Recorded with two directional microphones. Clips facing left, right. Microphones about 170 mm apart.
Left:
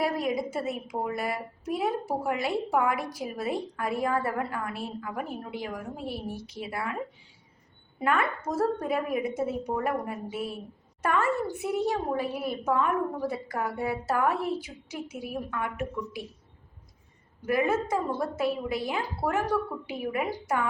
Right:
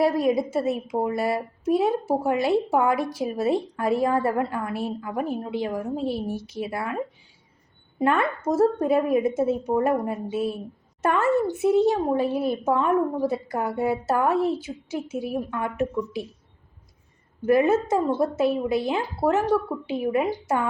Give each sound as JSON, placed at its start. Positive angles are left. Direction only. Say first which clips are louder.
{"t": 0.0, "sound": "a woman's voice", "louder": "right 7 dB", "side_deg": -25}
{"t": 8.0, "sound": "a woman's voice", "louder": "right 5 dB", "side_deg": -25}
{"t": 17.4, "sound": "a woman's voice", "louder": "right 7 dB", "side_deg": -25}